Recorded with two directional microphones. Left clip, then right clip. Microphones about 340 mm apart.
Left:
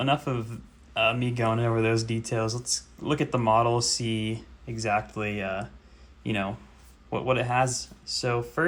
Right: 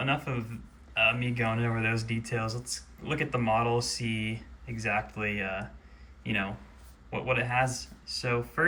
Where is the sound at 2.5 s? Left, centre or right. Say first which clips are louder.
Left 7 dB; left.